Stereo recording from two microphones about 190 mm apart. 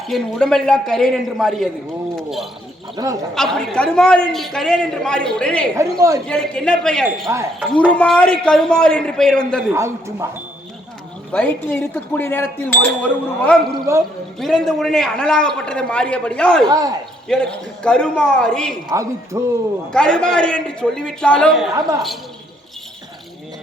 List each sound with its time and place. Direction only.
0.1 s a man's voice: 5° left (ahead or behind)
2.9 s speech: 20° right (ahead or behind)
3.3 s a man's voice: centre (ahead or behind)
5.7 s speech: 15° right (ahead or behind)
6.2 s a man's voice: 5° left (ahead or behind)
7.3 s speech: 15° right (ahead or behind)
7.9 s a man's voice: 5° left (ahead or behind)
9.6 s speech: 15° right (ahead or behind)
11.3 s a man's voice: 10° left (ahead or behind)
16.6 s speech: 20° right (ahead or behind)
17.2 s a man's voice: 5° left (ahead or behind)
18.9 s speech: 15° right (ahead or behind)
19.9 s a man's voice: 5° left (ahead or behind)